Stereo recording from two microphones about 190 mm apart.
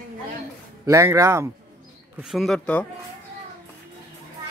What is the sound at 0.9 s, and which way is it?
Speech, 15° right (ahead or behind).